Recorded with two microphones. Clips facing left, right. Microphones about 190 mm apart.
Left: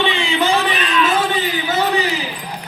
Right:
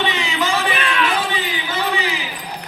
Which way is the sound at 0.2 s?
35° left (ahead or behind).